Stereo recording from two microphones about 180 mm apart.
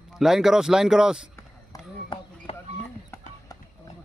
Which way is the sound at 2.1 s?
25° left (ahead or behind).